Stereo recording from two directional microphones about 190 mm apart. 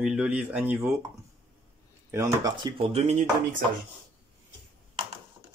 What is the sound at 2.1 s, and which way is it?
Speech, 15° right (ahead or behind).